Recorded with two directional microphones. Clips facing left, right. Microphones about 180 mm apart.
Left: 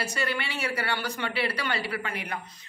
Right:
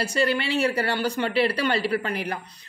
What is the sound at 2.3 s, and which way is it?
Speech, 35° right (ahead or behind).